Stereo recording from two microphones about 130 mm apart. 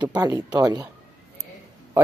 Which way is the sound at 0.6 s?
30° right (ahead or behind).